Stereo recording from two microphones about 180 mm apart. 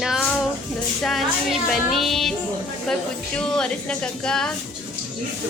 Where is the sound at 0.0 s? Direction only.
Centre (ahead or behind).